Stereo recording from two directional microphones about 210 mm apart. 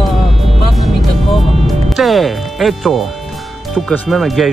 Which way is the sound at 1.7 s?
Centre (ahead or behind).